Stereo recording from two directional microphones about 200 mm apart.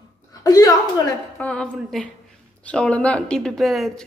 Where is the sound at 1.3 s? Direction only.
5° left (ahead or behind).